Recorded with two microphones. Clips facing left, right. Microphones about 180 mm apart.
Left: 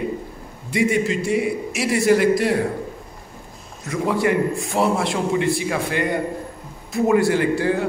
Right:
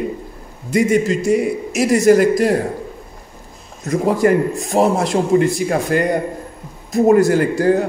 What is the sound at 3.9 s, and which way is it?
A man's voice, 40° right (ahead or behind).